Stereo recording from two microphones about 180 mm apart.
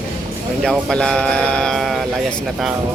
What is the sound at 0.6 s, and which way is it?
Speech, 5° left (ahead or behind).